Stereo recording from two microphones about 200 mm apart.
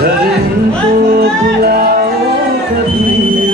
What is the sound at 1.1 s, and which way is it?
Music, 50° right (ahead or behind).